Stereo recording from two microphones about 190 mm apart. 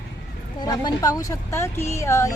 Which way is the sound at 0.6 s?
20° left (ahead or behind).